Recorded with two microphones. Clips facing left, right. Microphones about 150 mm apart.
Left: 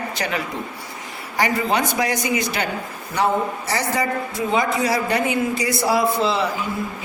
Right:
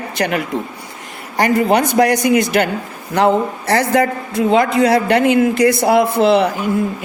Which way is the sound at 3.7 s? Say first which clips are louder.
Right 10 dB; 55° right (ahead or behind).